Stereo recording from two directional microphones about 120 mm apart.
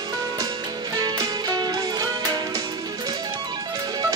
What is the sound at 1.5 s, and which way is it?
Music, 35° right (ahead or behind).